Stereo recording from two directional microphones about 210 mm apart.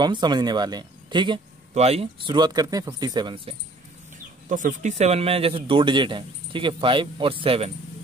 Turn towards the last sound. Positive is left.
turn(degrees=-30)  # may be behind; listen again after turning